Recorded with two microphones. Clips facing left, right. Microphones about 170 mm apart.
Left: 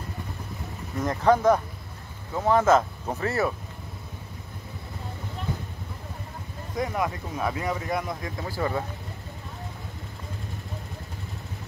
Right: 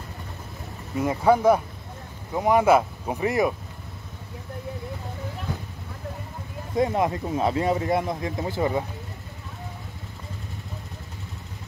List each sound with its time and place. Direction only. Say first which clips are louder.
0.9 s speech: right 2 dB; 10° right (ahead or behind)
6.8 s speech: right 5 dB; 25° right (ahead or behind)